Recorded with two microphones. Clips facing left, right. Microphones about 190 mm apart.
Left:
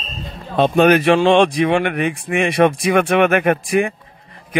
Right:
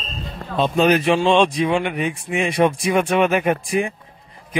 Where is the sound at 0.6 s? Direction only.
65° left (ahead or behind).